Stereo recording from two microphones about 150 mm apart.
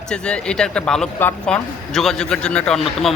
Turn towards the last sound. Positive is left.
turn(degrees=0)  # may be behind; listen again after turning